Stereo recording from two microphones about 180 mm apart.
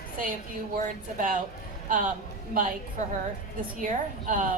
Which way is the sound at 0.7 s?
50° right (ahead or behind).